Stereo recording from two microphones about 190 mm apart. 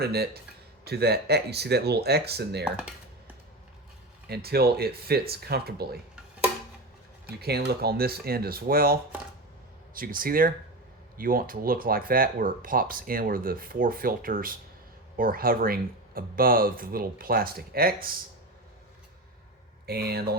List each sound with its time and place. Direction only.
0.0 s speech: 55° right (ahead or behind)
4.3 s speech: 55° right (ahead or behind)
7.3 s speech: 55° right (ahead or behind)
19.9 s speech: 55° right (ahead or behind)